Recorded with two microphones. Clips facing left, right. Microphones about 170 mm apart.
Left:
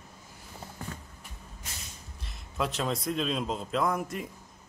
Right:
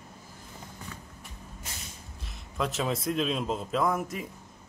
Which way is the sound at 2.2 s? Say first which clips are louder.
Even; centre (ahead or behind).